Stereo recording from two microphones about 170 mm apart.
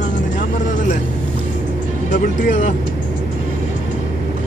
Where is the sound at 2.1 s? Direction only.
50° left (ahead or behind).